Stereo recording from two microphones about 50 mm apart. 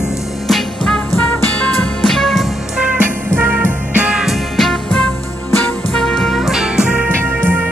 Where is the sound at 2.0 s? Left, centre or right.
Centre.